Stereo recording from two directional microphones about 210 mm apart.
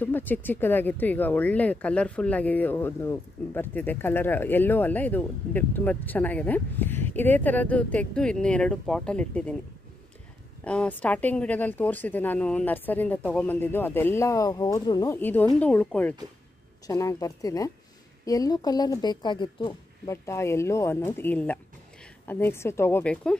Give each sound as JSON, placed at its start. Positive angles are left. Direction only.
{"t": 0.0, "sound": "speech", "side_deg": 10}
{"t": 10.6, "sound": "speech", "side_deg": 5}